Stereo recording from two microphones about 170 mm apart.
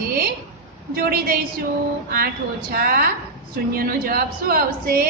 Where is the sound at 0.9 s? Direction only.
65° right (ahead or behind).